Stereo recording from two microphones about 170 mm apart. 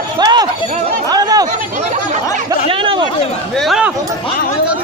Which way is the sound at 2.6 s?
30° right (ahead or behind).